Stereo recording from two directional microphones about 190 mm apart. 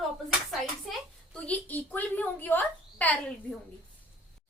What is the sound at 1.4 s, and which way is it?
A woman's voice, 10° left (ahead or behind).